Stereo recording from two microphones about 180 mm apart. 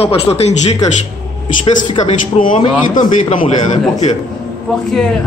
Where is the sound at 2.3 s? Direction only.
45° left (ahead or behind).